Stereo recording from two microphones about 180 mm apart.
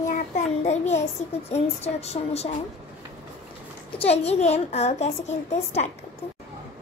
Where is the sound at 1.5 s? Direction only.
35° left (ahead or behind).